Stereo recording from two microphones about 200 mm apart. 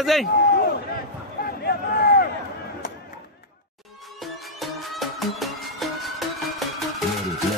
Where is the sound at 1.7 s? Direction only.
50° left (ahead or behind).